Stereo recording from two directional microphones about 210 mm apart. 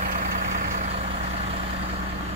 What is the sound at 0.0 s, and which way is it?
Vehicle, 40° right (ahead or behind).